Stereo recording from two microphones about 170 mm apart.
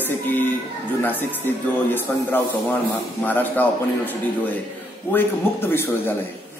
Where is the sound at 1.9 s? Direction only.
10° left (ahead or behind).